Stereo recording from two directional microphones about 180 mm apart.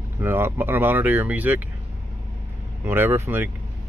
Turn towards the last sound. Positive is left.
turn(degrees=-15)  # may be behind; listen again after turning